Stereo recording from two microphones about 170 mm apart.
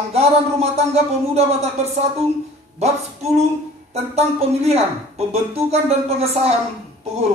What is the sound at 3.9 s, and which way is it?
Speech, 40° right (ahead or behind).